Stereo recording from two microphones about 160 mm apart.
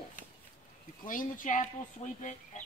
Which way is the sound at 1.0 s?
55° left (ahead or behind).